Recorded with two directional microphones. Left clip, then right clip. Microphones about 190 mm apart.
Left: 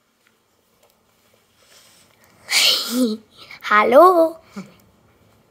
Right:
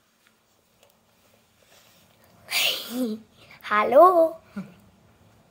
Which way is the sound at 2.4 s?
25° left (ahead or behind).